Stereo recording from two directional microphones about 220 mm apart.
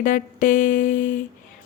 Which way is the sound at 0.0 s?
35° left (ahead or behind).